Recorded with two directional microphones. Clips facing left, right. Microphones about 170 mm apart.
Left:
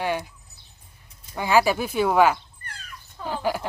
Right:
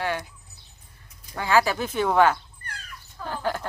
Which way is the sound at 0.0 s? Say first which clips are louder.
Left 2 dB; 15° left (ahead or behind).